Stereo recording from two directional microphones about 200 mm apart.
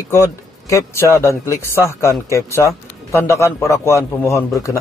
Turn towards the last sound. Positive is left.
turn(degrees=15)  # may be behind; listen again after turning